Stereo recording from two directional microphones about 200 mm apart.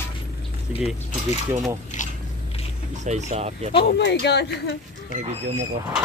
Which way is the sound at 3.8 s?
60° left (ahead or behind).